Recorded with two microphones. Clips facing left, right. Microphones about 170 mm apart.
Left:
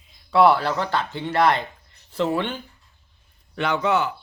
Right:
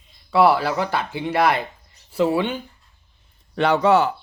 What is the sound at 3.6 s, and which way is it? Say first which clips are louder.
Speech: right 5 dB; 35° right (ahead or behind).